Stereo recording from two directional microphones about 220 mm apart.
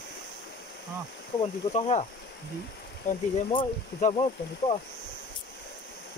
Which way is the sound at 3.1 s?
30° left (ahead or behind).